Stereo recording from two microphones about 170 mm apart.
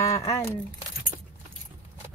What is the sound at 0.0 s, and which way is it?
Speech, 20° left (ahead or behind).